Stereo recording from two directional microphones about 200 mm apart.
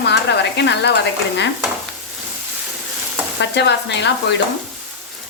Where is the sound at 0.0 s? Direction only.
60° left (ahead or behind).